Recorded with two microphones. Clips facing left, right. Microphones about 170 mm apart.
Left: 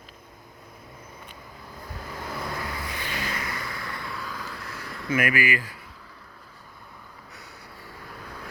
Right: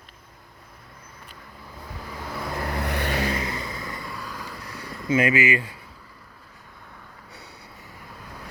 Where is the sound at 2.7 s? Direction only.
65° right (ahead or behind).